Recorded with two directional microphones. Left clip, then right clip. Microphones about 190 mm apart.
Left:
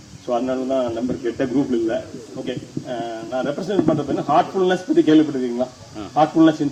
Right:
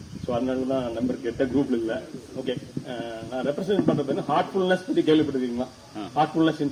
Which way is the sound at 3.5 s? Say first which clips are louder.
Left 2 dB; 20° right (ahead or behind).